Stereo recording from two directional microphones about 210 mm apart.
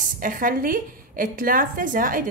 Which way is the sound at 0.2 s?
40° right (ahead or behind).